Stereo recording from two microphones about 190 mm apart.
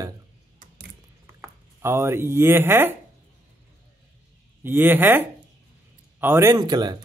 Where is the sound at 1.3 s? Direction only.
15° right (ahead or behind).